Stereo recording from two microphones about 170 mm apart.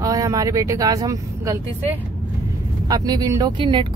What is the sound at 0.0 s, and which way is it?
Speech, 20° right (ahead or behind).